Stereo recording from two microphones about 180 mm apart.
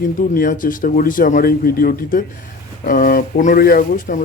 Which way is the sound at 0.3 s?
50° left (ahead or behind).